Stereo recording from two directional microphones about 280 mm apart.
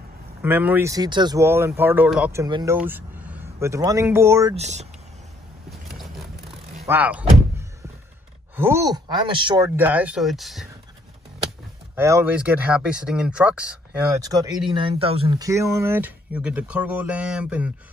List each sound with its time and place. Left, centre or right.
0.4 s speech: centre
4.6 s speech: right
6.8 s speech: centre
9.8 s speech: centre
11.9 s speech: centre